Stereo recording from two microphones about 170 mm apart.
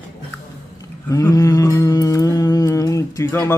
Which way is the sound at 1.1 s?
20° left (ahead or behind).